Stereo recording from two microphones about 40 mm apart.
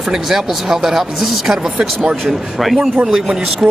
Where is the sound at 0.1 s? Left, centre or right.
Centre.